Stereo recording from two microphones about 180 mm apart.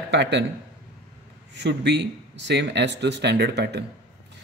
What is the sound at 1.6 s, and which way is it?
Speech, 70° right (ahead or behind).